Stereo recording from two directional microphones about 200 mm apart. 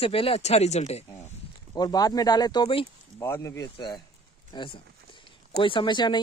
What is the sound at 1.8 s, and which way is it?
Speech, 20° left (ahead or behind).